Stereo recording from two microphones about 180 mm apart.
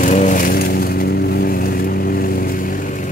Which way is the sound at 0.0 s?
45° left (ahead or behind).